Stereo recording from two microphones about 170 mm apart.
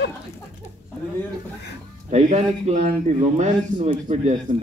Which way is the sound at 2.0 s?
40° right (ahead or behind).